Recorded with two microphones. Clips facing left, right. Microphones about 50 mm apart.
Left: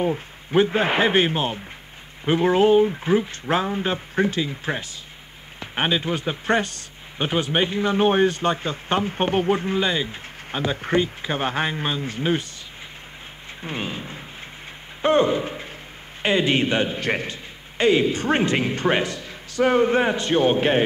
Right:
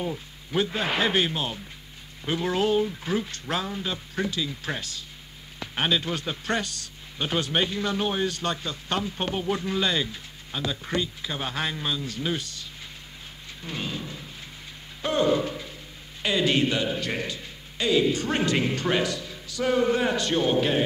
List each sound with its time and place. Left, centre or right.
0.0 s speech: left
9.5 s speech: left
13.6 s a man's voice: left